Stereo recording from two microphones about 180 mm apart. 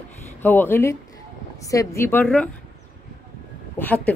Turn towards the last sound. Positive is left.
turn(degrees=10)  # may be behind; listen again after turning